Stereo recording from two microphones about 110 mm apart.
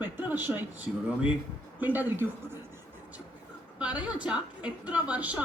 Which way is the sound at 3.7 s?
10° right (ahead or behind).